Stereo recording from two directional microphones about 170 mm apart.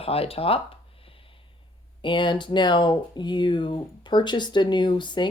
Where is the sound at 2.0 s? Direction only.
30° left (ahead or behind).